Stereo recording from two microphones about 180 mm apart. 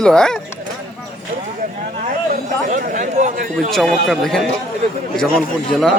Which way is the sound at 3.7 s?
Centre (ahead or behind).